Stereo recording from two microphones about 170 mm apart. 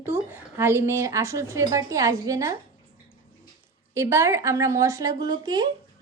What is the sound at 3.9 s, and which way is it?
A woman's voice, 15° right (ahead or behind).